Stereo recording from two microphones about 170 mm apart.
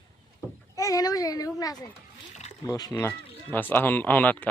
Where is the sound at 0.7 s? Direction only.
20° left (ahead or behind).